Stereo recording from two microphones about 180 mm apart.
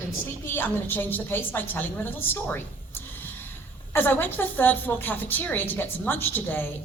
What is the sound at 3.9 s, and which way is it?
A woman's voice, 10° left (ahead or behind).